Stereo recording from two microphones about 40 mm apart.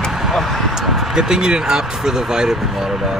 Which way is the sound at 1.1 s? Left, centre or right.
Centre.